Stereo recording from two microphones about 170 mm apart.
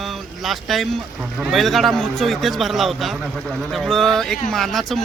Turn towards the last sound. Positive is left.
turn(degrees=0)  # may be behind; listen again after turning